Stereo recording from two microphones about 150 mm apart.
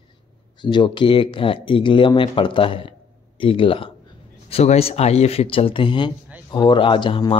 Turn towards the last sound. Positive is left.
turn(degrees=35)  # may be behind; listen again after turning